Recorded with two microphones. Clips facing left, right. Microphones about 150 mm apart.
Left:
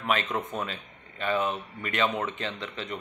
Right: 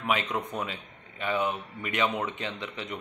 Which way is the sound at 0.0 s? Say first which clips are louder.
Left 1 dB; 15° right (ahead or behind).